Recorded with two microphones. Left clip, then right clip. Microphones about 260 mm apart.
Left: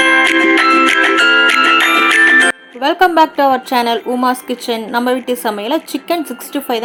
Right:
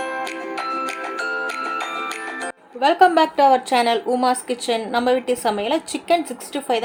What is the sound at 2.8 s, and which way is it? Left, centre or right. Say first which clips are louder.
A woman's voice: left 3 dB; centre.